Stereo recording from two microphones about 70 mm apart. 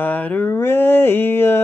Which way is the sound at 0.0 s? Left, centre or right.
Left.